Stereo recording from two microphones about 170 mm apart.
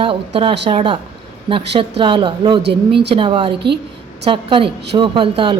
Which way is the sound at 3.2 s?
30° right (ahead or behind).